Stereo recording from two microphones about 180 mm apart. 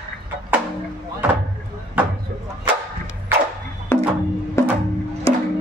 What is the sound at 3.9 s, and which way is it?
Music, 15° left (ahead or behind).